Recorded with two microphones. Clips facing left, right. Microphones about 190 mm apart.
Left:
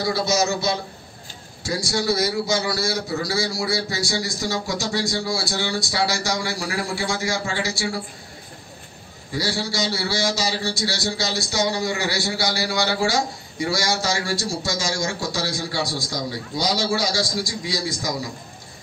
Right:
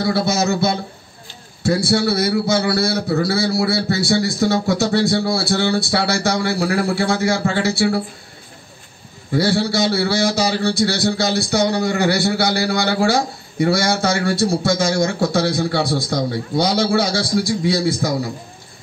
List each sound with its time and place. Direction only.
0.0 s a man's voice: 55° right (ahead or behind)
9.3 s a man's voice: 55° right (ahead or behind)